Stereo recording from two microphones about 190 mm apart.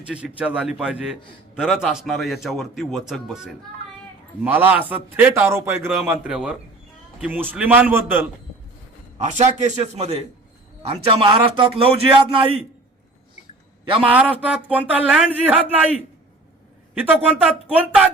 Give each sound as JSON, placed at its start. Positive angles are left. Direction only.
{"t": 0.0, "sound": "a man's voice", "side_deg": -5}
{"t": 9.1, "sound": "a man's voice", "side_deg": -35}
{"t": 13.8, "sound": "a man's voice", "side_deg": -30}
{"t": 14.1, "sound": "a man's voice", "side_deg": -5}
{"t": 16.9, "sound": "a man's voice", "side_deg": -10}